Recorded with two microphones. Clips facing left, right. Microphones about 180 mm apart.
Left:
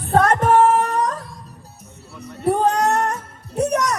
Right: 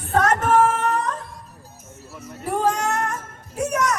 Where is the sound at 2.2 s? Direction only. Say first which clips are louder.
Left 5 dB; 35° left (ahead or behind).